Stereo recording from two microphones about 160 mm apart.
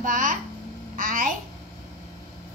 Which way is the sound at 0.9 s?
60° right (ahead or behind).